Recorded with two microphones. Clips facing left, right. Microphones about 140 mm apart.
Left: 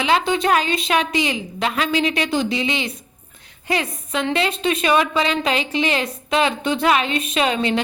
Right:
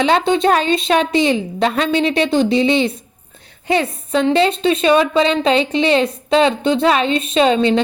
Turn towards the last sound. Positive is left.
turn(degrees=-30)  # may be behind; listen again after turning